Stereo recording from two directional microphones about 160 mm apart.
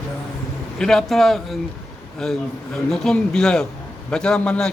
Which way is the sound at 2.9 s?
5° left (ahead or behind).